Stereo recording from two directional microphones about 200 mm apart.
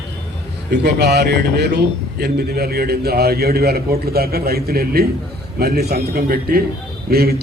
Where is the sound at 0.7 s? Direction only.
55° right (ahead or behind).